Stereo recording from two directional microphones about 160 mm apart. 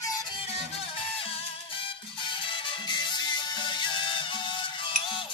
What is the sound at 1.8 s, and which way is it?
Music, 30° left (ahead or behind).